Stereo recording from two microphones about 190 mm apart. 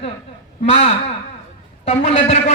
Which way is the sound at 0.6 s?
30° left (ahead or behind).